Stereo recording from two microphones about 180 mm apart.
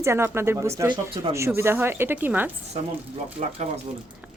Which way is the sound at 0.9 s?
30° right (ahead or behind).